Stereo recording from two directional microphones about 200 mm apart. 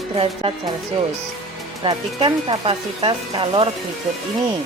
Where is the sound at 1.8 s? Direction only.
25° right (ahead or behind).